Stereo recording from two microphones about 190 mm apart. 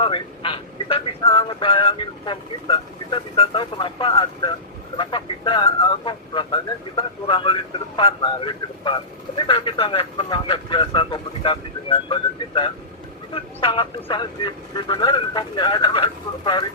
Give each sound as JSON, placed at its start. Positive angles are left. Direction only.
{"t": 0.0, "sound": "speech", "side_deg": 25}